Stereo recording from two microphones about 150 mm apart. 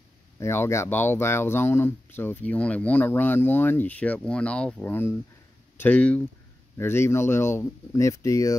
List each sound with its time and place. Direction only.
0.4 s speech: 20° left (ahead or behind)